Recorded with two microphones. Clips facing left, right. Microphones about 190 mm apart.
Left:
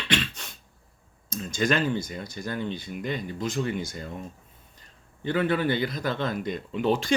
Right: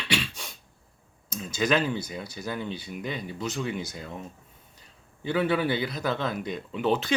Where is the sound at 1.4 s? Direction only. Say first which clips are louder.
Even; 5° right (ahead or behind).